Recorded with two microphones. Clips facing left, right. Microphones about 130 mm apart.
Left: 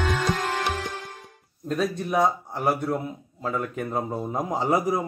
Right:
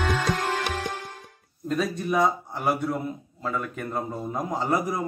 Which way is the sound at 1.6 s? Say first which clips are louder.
Even; centre (ahead or behind).